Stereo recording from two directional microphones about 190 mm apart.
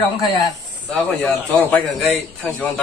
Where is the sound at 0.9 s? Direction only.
5° left (ahead or behind).